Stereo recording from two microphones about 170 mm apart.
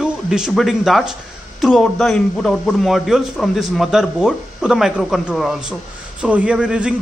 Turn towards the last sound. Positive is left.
turn(degrees=-5)  # may be behind; listen again after turning